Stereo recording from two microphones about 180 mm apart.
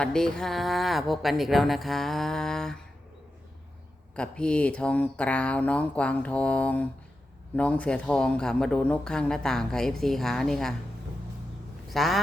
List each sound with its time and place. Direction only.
0.0 s speech: 5° left (ahead or behind)
4.1 s speech: 5° left (ahead or behind)
11.9 s speech: centre (ahead or behind)